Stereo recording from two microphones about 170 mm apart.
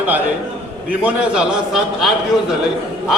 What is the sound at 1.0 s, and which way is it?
A man's voice, 5° right (ahead or behind).